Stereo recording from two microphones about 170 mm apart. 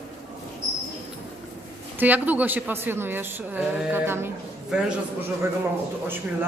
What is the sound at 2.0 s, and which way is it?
A woman's voice, 10° right (ahead or behind).